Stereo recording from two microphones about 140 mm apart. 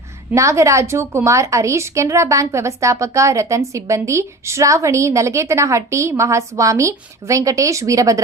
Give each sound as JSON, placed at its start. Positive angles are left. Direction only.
{"t": 0.3, "sound": "a woman's voice", "side_deg": -20}